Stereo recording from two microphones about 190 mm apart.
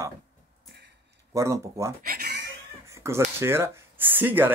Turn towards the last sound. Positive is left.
turn(degrees=-10)  # may be behind; listen again after turning